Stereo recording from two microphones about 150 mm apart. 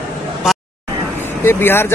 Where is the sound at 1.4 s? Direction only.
15° left (ahead or behind).